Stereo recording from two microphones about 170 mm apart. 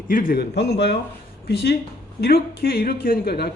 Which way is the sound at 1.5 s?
70° left (ahead or behind).